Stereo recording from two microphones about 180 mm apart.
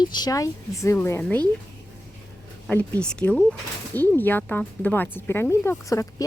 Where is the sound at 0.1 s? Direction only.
20° left (ahead or behind).